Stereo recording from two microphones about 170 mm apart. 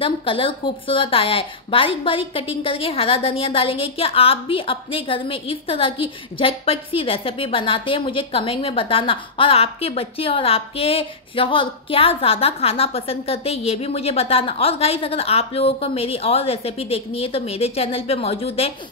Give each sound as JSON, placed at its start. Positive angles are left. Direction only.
{"t": 0.0, "sound": "speech", "side_deg": 30}